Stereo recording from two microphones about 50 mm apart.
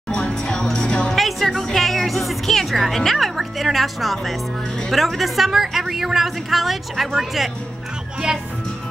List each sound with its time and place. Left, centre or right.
0.1 s music: centre
1.1 s music: centre
4.9 s speech: centre